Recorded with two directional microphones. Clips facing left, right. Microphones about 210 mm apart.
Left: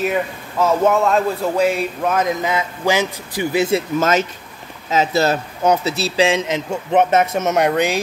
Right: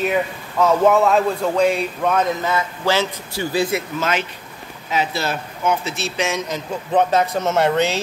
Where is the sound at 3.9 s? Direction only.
45° left (ahead or behind).